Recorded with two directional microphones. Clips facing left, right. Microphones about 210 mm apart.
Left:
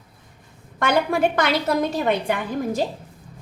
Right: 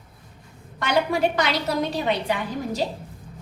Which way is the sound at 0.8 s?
50° left (ahead or behind).